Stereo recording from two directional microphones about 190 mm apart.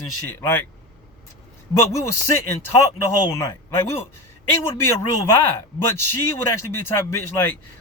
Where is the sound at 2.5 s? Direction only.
15° left (ahead or behind).